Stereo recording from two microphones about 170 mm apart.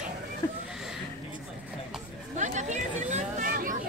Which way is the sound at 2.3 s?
45° right (ahead or behind).